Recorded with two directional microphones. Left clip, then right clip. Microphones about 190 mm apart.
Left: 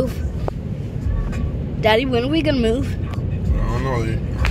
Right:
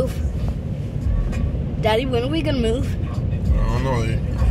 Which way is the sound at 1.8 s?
10° right (ahead or behind).